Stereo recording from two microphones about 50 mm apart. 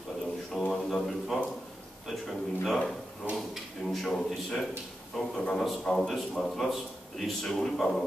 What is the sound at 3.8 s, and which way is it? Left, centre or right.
A man's voice, centre.